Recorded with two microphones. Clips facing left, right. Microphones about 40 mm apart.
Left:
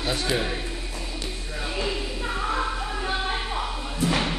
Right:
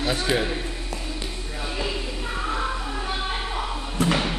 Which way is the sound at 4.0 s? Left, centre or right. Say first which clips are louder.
Right 3 dB; right.